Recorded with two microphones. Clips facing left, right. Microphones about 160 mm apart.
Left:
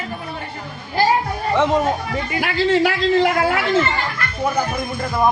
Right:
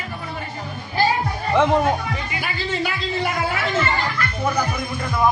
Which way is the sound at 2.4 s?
75° left (ahead or behind).